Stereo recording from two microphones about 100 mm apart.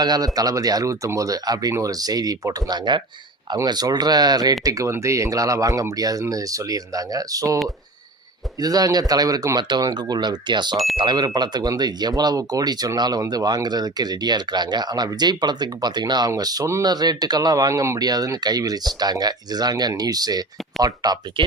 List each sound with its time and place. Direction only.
0.0 s speech: 40° right (ahead or behind)
8.6 s speech: 40° right (ahead or behind)